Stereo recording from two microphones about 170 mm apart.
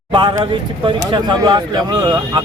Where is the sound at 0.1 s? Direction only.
25° right (ahead or behind).